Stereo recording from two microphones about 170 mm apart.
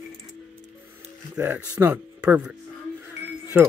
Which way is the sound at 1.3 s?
10° right (ahead or behind).